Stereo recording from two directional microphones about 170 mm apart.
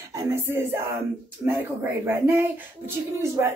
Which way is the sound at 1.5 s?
15° right (ahead or behind).